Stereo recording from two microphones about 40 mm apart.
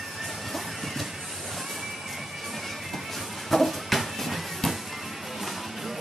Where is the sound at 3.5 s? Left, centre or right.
Centre.